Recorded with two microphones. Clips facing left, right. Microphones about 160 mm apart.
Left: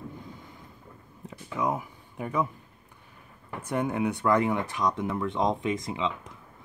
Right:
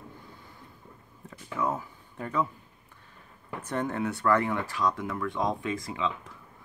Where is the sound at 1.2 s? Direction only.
15° left (ahead or behind).